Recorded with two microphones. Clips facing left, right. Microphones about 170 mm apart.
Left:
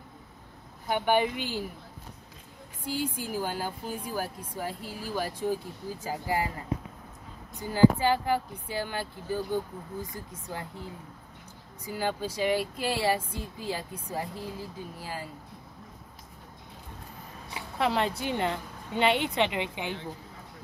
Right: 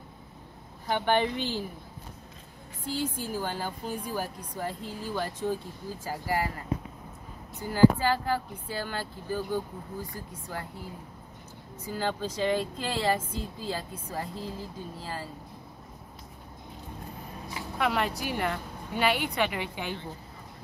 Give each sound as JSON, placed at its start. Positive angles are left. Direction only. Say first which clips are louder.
{"t": 0.8, "sound": "speech", "louder": "left 1 dB", "side_deg": 10}
{"t": 2.9, "sound": "a woman's voice", "louder": "even", "side_deg": 10}
{"t": 7.6, "sound": "a woman's voice", "louder": "even", "side_deg": 20}
{"t": 11.8, "sound": "speech", "louder": "even", "side_deg": 15}
{"t": 17.6, "sound": "a woman's voice", "louder": "left 1 dB", "side_deg": 30}